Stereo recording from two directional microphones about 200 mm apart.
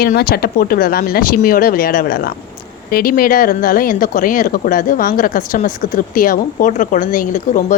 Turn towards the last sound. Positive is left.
turn(degrees=40)  # may be behind; listen again after turning